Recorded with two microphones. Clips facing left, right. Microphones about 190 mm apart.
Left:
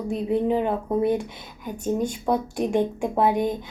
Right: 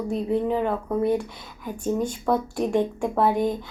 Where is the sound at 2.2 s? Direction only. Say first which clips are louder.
Right 1 dB; 20° left (ahead or behind).